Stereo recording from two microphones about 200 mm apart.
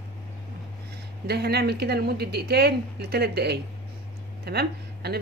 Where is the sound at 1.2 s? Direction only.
55° right (ahead or behind).